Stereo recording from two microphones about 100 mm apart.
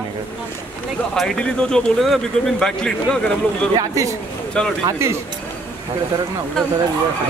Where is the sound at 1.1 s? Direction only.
5° left (ahead or behind).